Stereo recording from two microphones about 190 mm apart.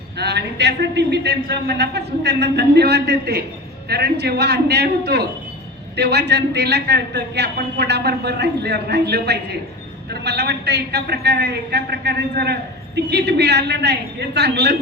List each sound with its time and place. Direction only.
0.2 s a man's voice: 60° right (ahead or behind)